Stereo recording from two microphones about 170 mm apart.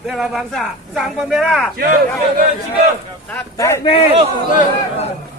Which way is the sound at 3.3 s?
15° left (ahead or behind).